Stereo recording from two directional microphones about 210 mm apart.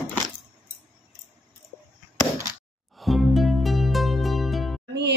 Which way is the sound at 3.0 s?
Centre (ahead or behind).